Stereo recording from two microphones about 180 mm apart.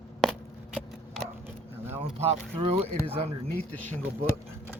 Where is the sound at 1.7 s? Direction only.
10° right (ahead or behind).